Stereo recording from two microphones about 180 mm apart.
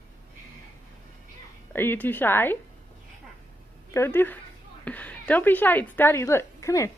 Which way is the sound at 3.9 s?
15° left (ahead or behind).